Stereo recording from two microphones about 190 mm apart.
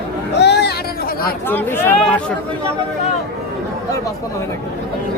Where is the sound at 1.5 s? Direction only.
10° left (ahead or behind).